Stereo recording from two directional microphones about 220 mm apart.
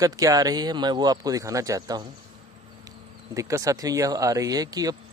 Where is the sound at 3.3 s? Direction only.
15° right (ahead or behind).